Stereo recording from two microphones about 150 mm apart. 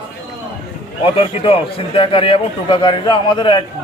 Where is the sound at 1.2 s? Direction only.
40° left (ahead or behind).